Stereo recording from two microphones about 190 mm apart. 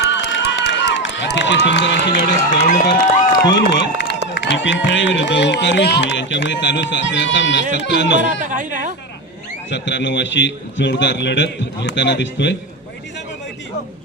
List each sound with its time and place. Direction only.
0.0 s run: 70° left (ahead or behind)
2.1 s speech: 45° left (ahead or behind)
3.8 s speech: 70° left (ahead or behind)
8.3 s speech: 40° right (ahead or behind)
9.6 s speech: 70° left (ahead or behind)